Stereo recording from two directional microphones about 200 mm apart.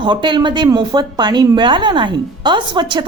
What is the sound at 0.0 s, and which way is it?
A woman's voice, 25° right (ahead or behind).